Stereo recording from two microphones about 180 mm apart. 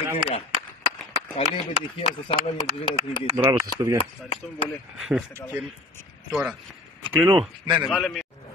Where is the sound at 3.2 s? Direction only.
35° right (ahead or behind).